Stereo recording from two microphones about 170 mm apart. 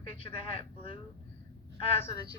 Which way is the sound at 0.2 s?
30° left (ahead or behind).